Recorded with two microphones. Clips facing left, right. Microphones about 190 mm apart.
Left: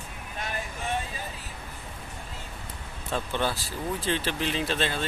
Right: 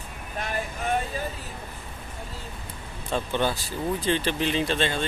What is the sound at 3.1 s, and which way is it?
Speech, centre (ahead or behind).